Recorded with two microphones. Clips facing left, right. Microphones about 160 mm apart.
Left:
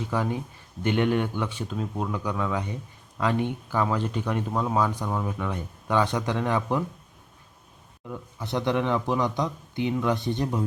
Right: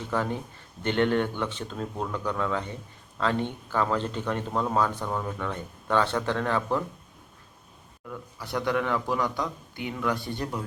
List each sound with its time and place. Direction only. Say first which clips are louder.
0.1 s speech: right 1 dB; 10° left (ahead or behind)
8.0 s speech: left 3 dB; 20° left (ahead or behind)